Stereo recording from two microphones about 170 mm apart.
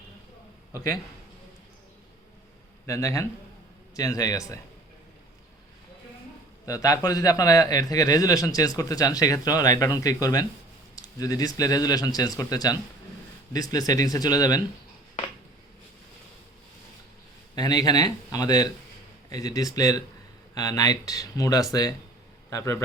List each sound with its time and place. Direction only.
2.8 s a man's voice: 20° left (ahead or behind)
6.7 s a man's voice: 20° left (ahead or behind)
17.5 s a man's voice: 25° left (ahead or behind)